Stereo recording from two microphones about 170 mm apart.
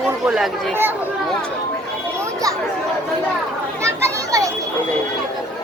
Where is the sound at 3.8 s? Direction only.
15° right (ahead or behind).